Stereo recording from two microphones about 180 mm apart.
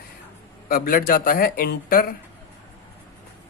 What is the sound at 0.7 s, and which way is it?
Speech, 50° left (ahead or behind).